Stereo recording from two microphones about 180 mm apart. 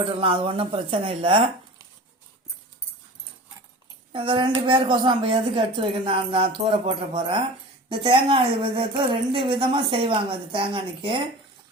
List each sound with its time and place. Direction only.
0.0 s a woman's voice: 30° right (ahead or behind)
4.1 s a woman's voice: 30° right (ahead or behind)